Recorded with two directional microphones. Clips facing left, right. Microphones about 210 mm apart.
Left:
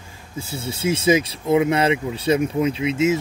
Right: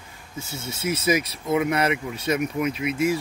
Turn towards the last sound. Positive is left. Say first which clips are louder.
# left 4 dB
turn(degrees=25)  # may be behind; listen again after turning